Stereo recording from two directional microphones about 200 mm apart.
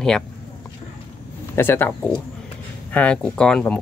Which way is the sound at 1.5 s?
10° left (ahead or behind).